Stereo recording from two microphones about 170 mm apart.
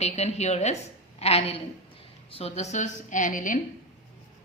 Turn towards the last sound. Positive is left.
turn(degrees=50)  # may be behind; listen again after turning